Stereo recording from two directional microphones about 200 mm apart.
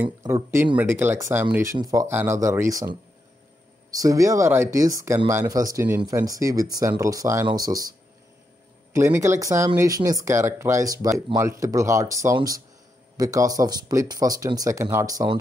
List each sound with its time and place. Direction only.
0.0 s speech: 15° right (ahead or behind)
8.9 s speech: 15° right (ahead or behind)